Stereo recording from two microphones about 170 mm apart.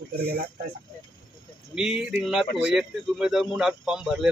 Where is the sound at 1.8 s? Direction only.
5° right (ahead or behind).